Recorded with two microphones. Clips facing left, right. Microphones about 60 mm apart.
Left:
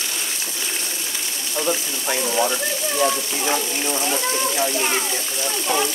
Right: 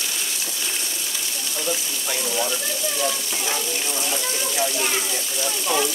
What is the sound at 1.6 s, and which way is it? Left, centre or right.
Speech, left.